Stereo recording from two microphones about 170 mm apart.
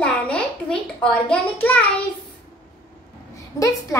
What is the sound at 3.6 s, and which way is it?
Speech, 20° left (ahead or behind).